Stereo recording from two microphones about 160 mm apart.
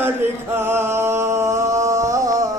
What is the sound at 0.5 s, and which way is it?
Music, 15° right (ahead or behind).